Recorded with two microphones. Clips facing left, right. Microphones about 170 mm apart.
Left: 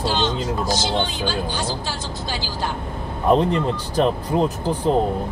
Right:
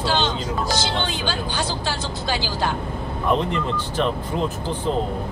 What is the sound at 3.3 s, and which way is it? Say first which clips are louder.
Speech: left 5 dB; 35° left (ahead or behind).